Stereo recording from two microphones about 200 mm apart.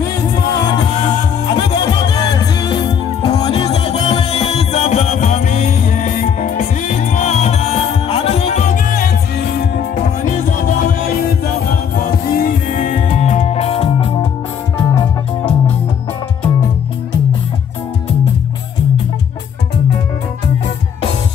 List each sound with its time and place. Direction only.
0.6 s music: 20° left (ahead or behind)